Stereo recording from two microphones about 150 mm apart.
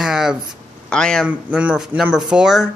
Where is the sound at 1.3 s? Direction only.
10° right (ahead or behind).